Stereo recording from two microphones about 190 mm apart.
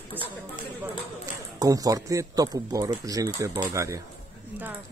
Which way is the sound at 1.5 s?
20° right (ahead or behind).